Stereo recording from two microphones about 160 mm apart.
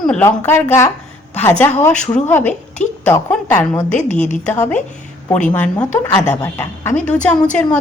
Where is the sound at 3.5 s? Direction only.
20° left (ahead or behind).